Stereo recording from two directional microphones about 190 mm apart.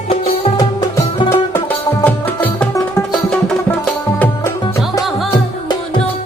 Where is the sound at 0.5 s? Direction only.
20° left (ahead or behind).